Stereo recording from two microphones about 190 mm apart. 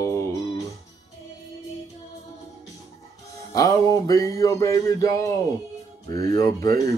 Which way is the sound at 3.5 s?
15° left (ahead or behind).